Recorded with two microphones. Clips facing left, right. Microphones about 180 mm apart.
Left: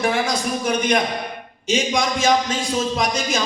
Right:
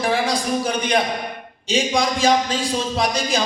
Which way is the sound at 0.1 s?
30° right (ahead or behind).